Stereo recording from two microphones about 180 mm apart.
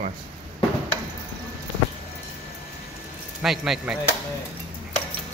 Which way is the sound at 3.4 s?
Centre (ahead or behind).